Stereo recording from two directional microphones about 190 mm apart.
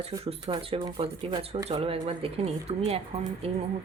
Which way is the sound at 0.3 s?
30° right (ahead or behind).